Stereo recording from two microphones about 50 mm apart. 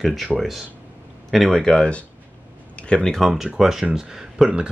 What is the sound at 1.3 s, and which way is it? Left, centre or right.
Speech, centre.